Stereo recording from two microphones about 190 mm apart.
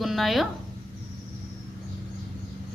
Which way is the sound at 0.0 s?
Centre (ahead or behind).